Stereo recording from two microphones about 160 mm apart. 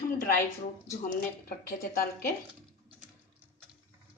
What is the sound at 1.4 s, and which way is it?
Speech, 65° left (ahead or behind).